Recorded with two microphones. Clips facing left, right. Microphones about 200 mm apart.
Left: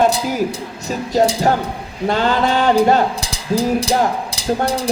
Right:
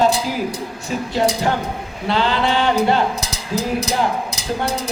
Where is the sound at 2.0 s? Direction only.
45° left (ahead or behind).